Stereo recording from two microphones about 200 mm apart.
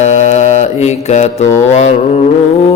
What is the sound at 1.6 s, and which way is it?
Speech, 35° left (ahead or behind).